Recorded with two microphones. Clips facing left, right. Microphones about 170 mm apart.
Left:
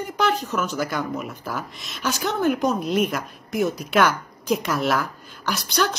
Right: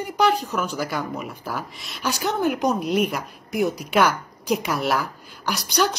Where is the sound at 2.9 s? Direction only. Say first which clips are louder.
Even; centre (ahead or behind).